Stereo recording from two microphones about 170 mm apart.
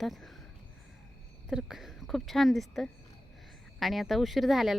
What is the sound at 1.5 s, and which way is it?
Speech, 5° right (ahead or behind).